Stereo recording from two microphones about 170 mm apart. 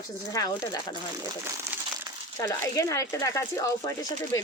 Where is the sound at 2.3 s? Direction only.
15° left (ahead or behind).